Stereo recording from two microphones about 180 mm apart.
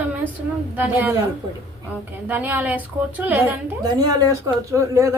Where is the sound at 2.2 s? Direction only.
10° right (ahead or behind).